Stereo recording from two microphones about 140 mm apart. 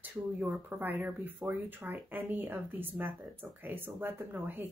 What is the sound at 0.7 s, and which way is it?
Speech, 15° right (ahead or behind).